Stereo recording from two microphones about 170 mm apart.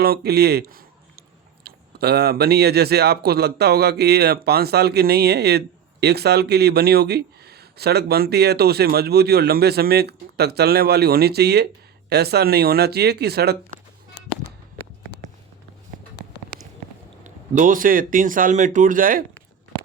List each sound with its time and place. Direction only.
0.0 s speech: 65° right (ahead or behind)
17.2 s a man's voice: 50° right (ahead or behind)